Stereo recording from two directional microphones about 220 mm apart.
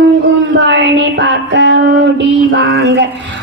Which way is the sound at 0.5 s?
55° right (ahead or behind).